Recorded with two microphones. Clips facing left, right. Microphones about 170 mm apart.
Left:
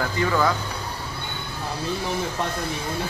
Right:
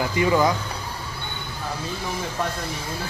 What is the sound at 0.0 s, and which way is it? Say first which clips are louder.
Speech: right 3 dB; 15° right (ahead or behind).